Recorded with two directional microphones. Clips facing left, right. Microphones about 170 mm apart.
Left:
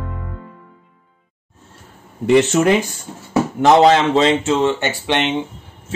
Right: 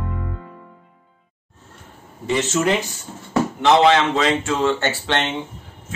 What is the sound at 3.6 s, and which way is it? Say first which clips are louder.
Speech: left 4 dB; 40° left (ahead or behind).